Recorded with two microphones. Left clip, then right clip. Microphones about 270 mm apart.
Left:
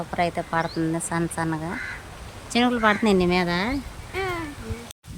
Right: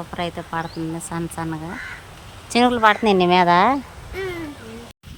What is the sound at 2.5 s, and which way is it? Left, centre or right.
Speech, right.